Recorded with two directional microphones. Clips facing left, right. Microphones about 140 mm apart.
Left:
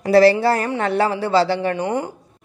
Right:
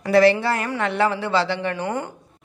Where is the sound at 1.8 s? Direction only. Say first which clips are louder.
Left 4 dB; 20° left (ahead or behind).